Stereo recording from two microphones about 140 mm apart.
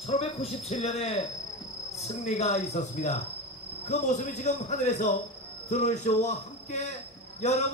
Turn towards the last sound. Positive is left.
turn(degrees=55)  # may be behind; listen again after turning